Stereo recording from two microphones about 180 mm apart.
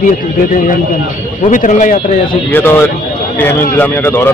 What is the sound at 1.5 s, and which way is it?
Speech, 45° left (ahead or behind).